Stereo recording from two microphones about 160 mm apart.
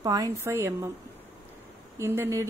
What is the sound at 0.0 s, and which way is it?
Speech, 20° right (ahead or behind).